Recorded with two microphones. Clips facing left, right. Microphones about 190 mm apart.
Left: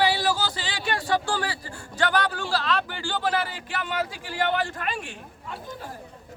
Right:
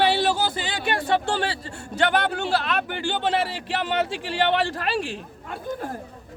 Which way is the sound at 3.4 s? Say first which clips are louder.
Right 5 dB; 85° right.